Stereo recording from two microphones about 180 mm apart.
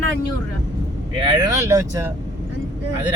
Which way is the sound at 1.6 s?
15° right (ahead or behind).